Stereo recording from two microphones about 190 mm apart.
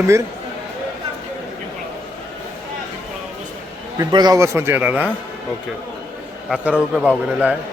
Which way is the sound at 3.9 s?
20° right (ahead or behind).